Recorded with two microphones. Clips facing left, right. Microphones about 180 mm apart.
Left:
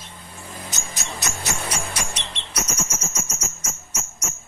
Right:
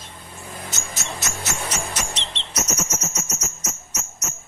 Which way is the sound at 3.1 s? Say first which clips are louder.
Right 1 dB; 10° left (ahead or behind).